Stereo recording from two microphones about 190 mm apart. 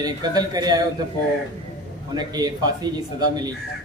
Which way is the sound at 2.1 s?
20° right (ahead or behind).